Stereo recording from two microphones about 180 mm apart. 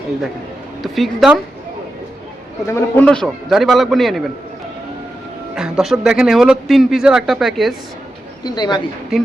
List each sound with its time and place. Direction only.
0.8 s speech: centre (ahead or behind)
2.6 s speech: 15° left (ahead or behind)
5.5 s speech: 5° right (ahead or behind)
8.4 s speech: 25° left (ahead or behind)
9.1 s speech: centre (ahead or behind)